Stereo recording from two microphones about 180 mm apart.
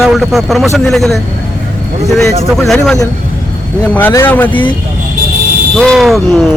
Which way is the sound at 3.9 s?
15° left (ahead or behind).